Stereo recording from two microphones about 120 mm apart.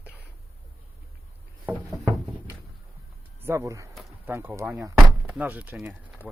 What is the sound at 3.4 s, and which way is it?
Speech, 25° right (ahead or behind).